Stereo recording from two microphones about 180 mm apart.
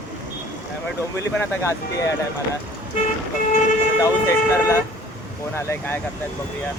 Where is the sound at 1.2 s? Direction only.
15° left (ahead or behind).